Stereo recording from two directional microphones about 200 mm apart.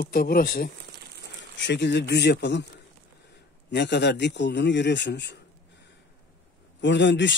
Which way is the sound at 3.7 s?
60° left (ahead or behind).